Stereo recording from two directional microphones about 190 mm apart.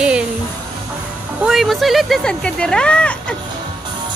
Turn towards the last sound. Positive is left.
turn(degrees=5)  # may be behind; listen again after turning